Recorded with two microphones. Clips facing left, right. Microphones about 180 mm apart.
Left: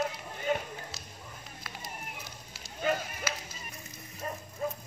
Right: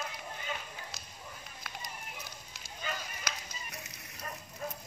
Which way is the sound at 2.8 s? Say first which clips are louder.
Left 10 dB; 55° left (ahead or behind).